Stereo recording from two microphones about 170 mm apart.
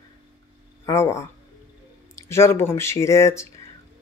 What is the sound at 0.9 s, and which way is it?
Speech, 15° left (ahead or behind).